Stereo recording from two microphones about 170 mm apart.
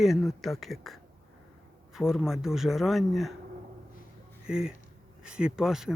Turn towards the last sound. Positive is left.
turn(degrees=-5)  # may be behind; listen again after turning